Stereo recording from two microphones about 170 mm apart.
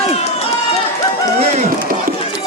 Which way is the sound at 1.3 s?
40° right (ahead or behind).